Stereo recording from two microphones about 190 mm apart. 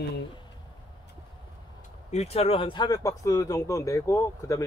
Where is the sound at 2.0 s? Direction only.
35° left (ahead or behind).